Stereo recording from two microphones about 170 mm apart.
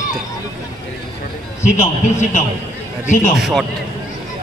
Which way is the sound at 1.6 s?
45° left (ahead or behind).